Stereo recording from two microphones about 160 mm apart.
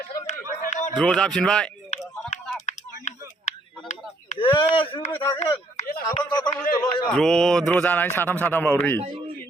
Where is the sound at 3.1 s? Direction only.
45° left (ahead or behind).